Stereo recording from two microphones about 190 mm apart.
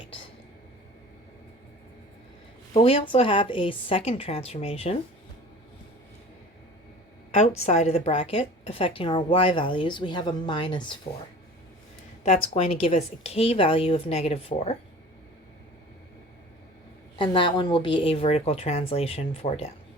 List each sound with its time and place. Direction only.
2.7 s a woman's voice: 30° left (ahead or behind)
7.3 s a woman's voice: 35° left (ahead or behind)
12.2 s speech: 35° left (ahead or behind)
17.2 s speech: 25° left (ahead or behind)